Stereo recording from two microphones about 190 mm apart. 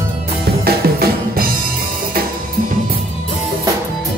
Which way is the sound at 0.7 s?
55° right (ahead or behind).